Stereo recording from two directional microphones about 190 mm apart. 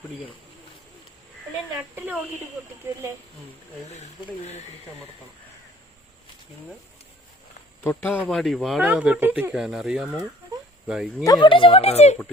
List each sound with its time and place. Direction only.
3.8 s speech: 35° left (ahead or behind)
7.9 s speech: 10° left (ahead or behind)
11.2 s speech: 20° left (ahead or behind)